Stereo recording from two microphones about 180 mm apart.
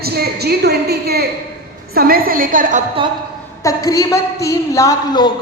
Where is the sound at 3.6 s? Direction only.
20° left (ahead or behind).